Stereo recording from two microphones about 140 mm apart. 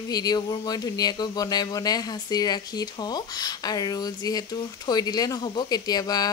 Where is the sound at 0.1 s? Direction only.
30° left (ahead or behind).